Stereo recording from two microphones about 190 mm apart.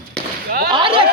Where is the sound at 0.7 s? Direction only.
25° right (ahead or behind).